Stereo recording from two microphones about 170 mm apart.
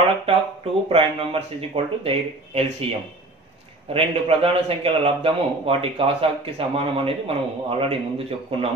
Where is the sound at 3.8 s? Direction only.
35° right (ahead or behind).